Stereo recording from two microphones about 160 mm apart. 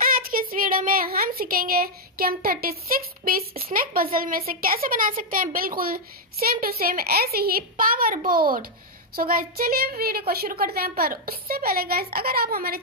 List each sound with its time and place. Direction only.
0.1 s a child's voice: 60° right (ahead or behind)